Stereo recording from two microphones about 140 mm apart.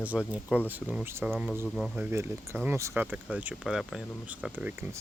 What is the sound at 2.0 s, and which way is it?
Speech, 15° right (ahead or behind).